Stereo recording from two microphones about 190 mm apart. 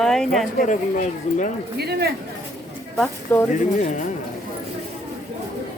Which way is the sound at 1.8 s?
55° right (ahead or behind).